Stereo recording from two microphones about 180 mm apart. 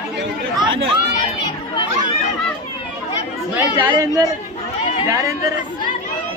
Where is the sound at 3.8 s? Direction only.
20° right (ahead or behind).